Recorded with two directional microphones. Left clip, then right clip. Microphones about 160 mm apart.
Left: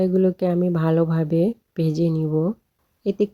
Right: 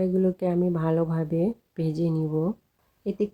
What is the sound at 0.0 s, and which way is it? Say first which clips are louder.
Speech: left 5 dB; 30° left (ahead or behind).